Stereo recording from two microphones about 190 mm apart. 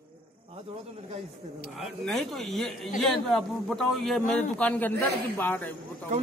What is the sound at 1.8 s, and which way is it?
A man's voice, centre (ahead or behind).